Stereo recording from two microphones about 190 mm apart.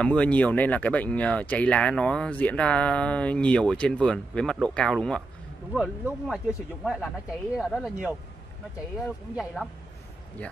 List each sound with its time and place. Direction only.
0.0 s speech: 5° left (ahead or behind)
9.3 s speech: centre (ahead or behind)